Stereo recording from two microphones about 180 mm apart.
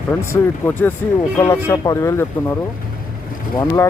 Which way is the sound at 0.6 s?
10° left (ahead or behind).